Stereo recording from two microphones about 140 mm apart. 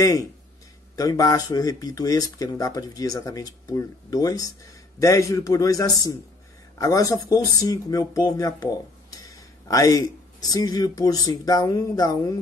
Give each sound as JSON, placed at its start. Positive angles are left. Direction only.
{"t": 0.0, "sound": "speech", "side_deg": 25}